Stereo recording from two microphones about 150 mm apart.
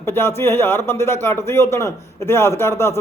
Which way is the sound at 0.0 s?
15° left (ahead or behind).